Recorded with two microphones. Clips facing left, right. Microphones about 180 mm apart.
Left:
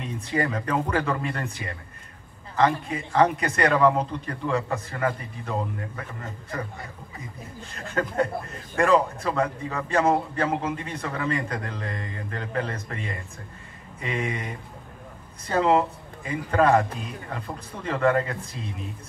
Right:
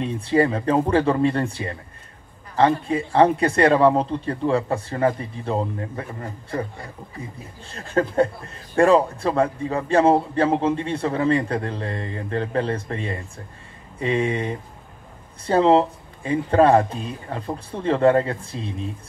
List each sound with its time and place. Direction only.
0.0 s a man's voice: 30° right (ahead or behind)
7.7 s a man's voice: 30° right (ahead or behind)